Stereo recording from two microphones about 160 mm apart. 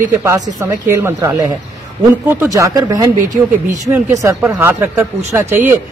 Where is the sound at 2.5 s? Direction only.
20° right (ahead or behind).